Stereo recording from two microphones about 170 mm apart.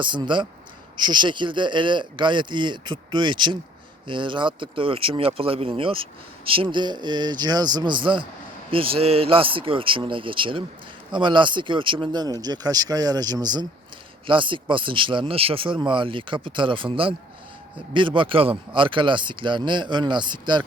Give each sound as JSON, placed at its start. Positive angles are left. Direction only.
{"t": 0.0, "sound": "speech", "side_deg": -30}